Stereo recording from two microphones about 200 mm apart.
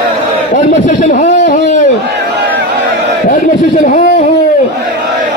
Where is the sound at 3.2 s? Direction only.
40° left (ahead or behind).